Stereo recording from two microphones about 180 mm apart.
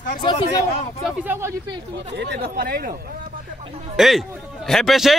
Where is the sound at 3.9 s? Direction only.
Centre (ahead or behind).